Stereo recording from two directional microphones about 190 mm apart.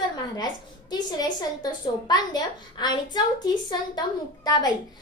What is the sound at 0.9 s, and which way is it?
A woman's voice, 20° left (ahead or behind).